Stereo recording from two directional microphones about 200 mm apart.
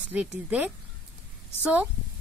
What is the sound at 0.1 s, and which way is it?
Speech, 5° right (ahead or behind).